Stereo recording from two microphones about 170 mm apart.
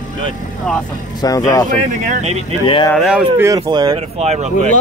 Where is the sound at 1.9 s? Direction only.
45° right (ahead or behind).